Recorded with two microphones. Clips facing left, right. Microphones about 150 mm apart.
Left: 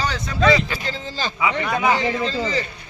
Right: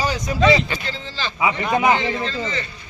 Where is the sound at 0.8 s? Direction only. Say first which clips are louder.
Left 2 dB; 45° left (ahead or behind).